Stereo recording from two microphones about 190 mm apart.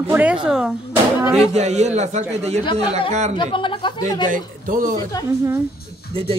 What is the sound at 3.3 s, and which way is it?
Speech, 25° left (ahead or behind).